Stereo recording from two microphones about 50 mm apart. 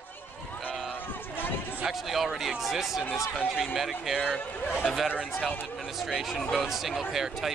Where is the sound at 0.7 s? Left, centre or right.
Centre.